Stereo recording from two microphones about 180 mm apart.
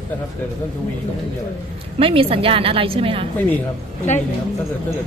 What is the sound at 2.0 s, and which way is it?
A woman's voice, 30° right (ahead or behind).